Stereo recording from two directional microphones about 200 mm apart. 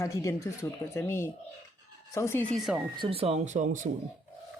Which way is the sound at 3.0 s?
25° right (ahead or behind).